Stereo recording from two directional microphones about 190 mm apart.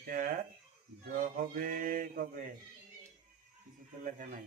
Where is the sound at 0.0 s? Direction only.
45° right (ahead or behind).